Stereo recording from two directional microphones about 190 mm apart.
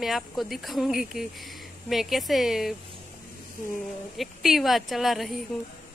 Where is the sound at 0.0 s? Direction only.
Centre (ahead or behind).